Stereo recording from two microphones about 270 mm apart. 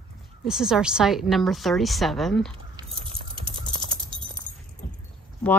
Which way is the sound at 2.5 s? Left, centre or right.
Centre.